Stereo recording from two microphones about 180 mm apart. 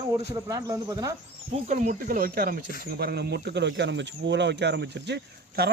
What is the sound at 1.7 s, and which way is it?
Speech, 50° right (ahead or behind).